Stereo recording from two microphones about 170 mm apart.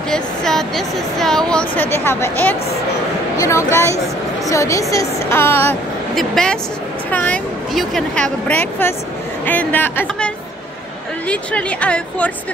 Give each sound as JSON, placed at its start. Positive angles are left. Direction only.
{"t": 0.1, "sound": "a woman's voice", "side_deg": 5}
{"t": 6.1, "sound": "a woman's voice", "side_deg": 5}